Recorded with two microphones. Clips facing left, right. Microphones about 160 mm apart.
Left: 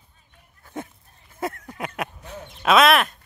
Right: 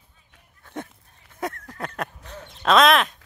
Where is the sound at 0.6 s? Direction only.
5° left (ahead or behind).